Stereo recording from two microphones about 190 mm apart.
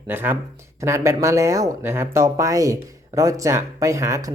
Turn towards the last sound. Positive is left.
turn(degrees=-15)  # may be behind; listen again after turning